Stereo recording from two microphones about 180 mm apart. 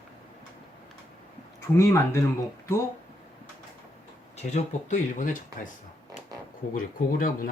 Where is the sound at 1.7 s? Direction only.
15° left (ahead or behind).